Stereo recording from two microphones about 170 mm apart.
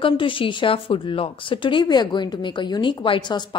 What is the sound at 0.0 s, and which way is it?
A woman's voice, 30° left (ahead or behind).